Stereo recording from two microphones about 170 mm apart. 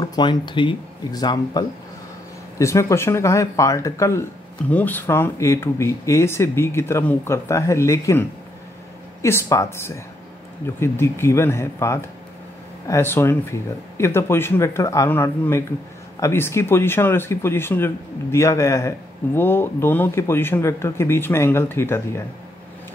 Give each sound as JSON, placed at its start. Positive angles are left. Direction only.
{"t": 0.0, "sound": "speech", "side_deg": 25}